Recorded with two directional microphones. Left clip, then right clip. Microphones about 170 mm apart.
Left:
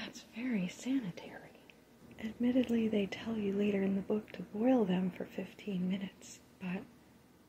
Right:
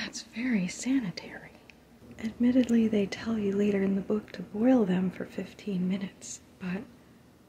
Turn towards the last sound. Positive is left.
turn(degrees=-15)  # may be behind; listen again after turning